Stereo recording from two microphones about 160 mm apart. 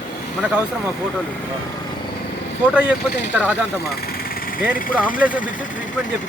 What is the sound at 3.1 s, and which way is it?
Speech, 90° left.